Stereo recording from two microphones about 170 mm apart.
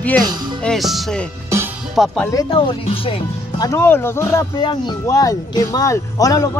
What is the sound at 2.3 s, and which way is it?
Speech, 25° left (ahead or behind).